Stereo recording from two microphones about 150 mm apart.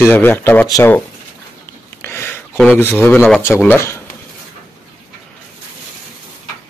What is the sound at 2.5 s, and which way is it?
Speech, 10° left (ahead or behind).